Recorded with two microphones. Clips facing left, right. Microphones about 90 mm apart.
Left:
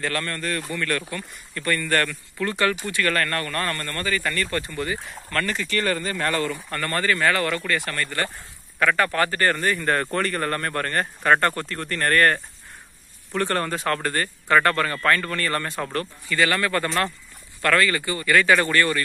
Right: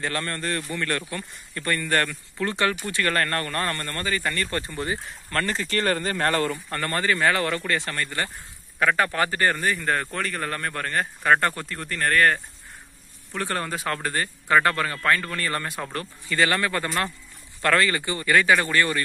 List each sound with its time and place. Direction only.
0.0 s speech: 25° right (ahead or behind); by 6.4 s 40° right (ahead or behind)
6.5 s speech: 20° right (ahead or behind)
16.3 s speech: 25° right (ahead or behind)